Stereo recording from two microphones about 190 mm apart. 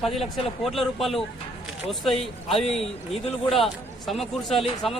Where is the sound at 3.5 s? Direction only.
Centre (ahead or behind).